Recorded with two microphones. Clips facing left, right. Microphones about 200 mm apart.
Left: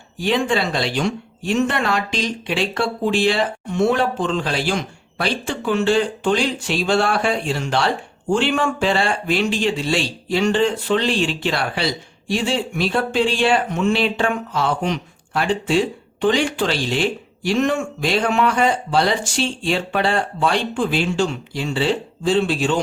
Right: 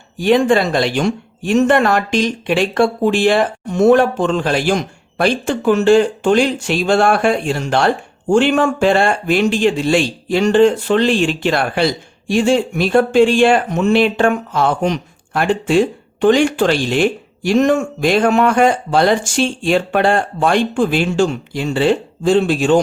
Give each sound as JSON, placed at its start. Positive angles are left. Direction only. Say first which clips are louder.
{"t": 0.2, "sound": "speech", "louder": "right 7 dB", "side_deg": -50}